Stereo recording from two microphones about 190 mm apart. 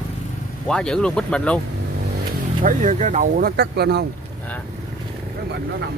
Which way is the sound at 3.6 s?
60° right (ahead or behind).